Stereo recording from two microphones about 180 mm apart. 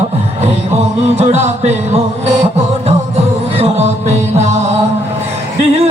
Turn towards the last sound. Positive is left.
turn(degrees=-40)  # may be behind; listen again after turning